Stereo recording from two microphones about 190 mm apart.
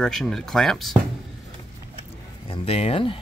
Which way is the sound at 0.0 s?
Centre (ahead or behind).